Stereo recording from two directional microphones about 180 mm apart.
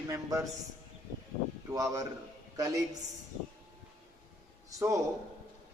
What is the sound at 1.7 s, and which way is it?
A man's voice, 20° right (ahead or behind).